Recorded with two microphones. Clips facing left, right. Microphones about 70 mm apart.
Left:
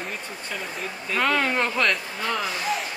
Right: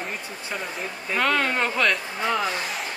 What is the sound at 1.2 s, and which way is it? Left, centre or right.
Speech, centre.